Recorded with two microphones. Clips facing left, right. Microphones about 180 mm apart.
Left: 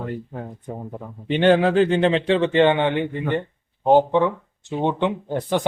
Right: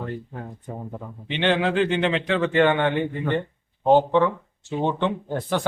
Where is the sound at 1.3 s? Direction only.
45° left (ahead or behind).